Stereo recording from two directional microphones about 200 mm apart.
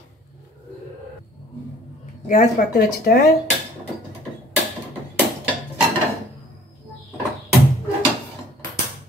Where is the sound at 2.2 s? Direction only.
45° left (ahead or behind).